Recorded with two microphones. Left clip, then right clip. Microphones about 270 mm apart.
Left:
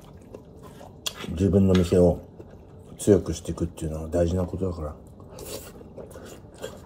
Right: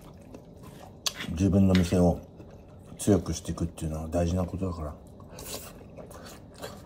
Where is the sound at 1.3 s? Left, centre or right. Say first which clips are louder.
Left 5 dB; centre.